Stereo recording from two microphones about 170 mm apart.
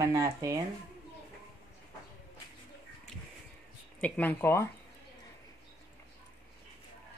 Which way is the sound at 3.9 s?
10° left (ahead or behind).